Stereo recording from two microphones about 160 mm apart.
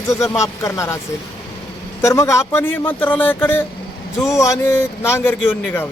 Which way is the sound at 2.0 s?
20° left (ahead or behind).